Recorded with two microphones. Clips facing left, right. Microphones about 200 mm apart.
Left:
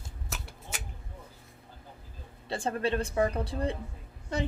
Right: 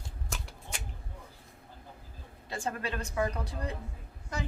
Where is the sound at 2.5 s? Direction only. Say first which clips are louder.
Left 6 dB; 30° left (ahead or behind).